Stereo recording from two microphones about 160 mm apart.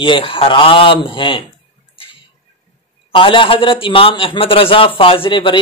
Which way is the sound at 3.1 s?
30° left (ahead or behind).